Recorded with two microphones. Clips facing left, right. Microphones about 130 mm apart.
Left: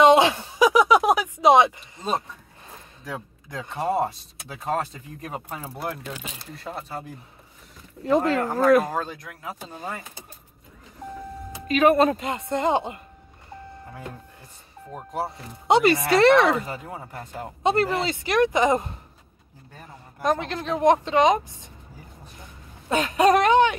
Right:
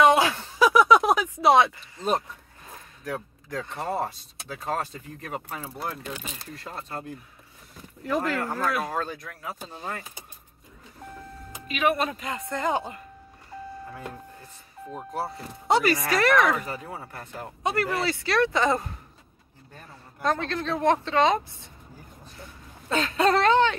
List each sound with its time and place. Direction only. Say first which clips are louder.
0.0 s a sound: left 4 dB; 20° left (ahead or behind)
3.4 s speech: left 5 dB; 15° left (ahead or behind)
5.2 s speech: left 1 dB; 20° left (ahead or behind)
6.7 s speech: left 3 dB; 5° left (ahead or behind)
8.0 s speech: left 6 dB; 25° left (ahead or behind)
8.5 s speech: left 10 dB; 45° left (ahead or behind)
8.9 s speech: left 1 dB; 15° left (ahead or behind)
11.6 s speech: left 7 dB; 40° left (ahead or behind)
12.2 s speech: left 4 dB; 25° left (ahead or behind)
15.1 s speech: left 3 dB; 20° left (ahead or behind)
16.6 s speech: left 1 dB; 15° left (ahead or behind)
20.2 s speech: left 2 dB; 15° left (ahead or behind)